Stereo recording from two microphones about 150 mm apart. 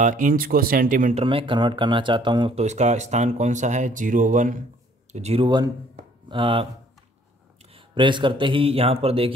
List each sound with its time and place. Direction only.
0.0 s speech: 60° right (ahead or behind)
1.1 s speech: 35° right (ahead or behind)
2.5 s speech: 50° right (ahead or behind)
5.1 s speech: 45° right (ahead or behind)
7.7 s speech: 35° right (ahead or behind)